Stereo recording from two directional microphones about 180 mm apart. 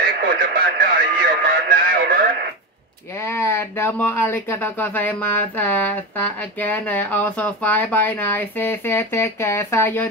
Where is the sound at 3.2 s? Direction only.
15° left (ahead or behind).